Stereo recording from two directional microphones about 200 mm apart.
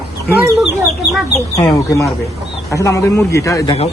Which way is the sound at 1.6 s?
15° left (ahead or behind).